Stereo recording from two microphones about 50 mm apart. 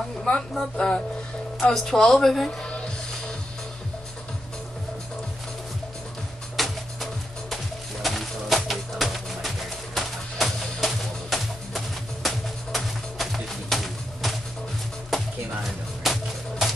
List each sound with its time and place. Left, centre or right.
0.6 s a woman's voice: centre
2.6 s music: centre
6.5 s music: centre
16.0 s music: centre